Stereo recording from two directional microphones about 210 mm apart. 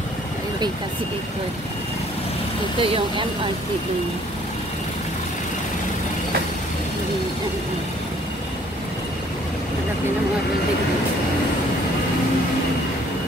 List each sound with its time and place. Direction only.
2.8 s speech: 25° right (ahead or behind)